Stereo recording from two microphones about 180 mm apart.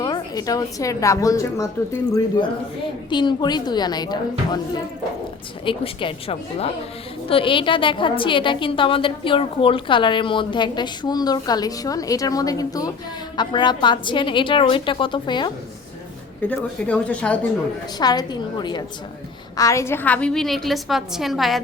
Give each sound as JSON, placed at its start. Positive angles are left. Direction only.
{"t": 0.0, "sound": "a woman's voice", "side_deg": 20}
{"t": 16.5, "sound": "speech", "side_deg": 5}
{"t": 18.0, "sound": "a woman's voice", "side_deg": 20}